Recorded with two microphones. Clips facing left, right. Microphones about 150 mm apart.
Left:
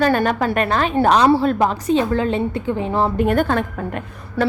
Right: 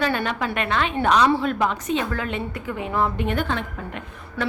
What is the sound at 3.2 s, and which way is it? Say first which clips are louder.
A woman's voice: left 7 dB; 45° left (ahead or behind).